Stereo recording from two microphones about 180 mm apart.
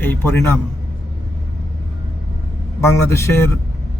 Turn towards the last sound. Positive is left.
turn(degrees=15)  # may be behind; listen again after turning